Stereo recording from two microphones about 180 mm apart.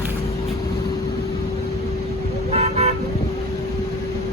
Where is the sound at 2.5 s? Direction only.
35° right (ahead or behind).